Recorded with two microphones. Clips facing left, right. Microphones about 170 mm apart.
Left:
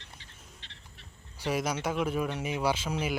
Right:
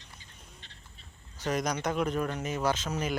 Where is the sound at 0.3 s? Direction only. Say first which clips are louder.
Even; centre (ahead or behind).